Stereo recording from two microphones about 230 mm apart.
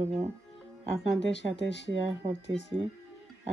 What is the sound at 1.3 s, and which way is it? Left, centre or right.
Speech, left.